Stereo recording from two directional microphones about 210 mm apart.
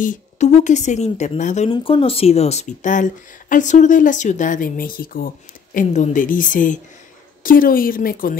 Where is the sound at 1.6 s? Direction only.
25° left (ahead or behind).